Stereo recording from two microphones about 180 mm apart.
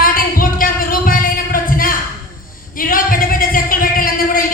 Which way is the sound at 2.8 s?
50° left (ahead or behind).